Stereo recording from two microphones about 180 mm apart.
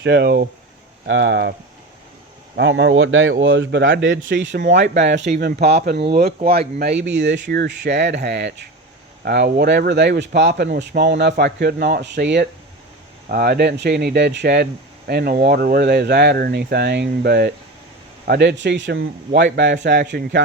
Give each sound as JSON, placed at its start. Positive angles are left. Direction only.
{"t": 0.0, "sound": "speech", "side_deg": -65}
{"t": 1.0, "sound": "speech", "side_deg": -90}
{"t": 2.6, "sound": "speech", "side_deg": -90}
{"t": 4.5, "sound": "a man's voice", "side_deg": -65}
{"t": 5.3, "sound": "a man's voice", "side_deg": -60}
{"t": 13.2, "sound": "a man's voice", "side_deg": -55}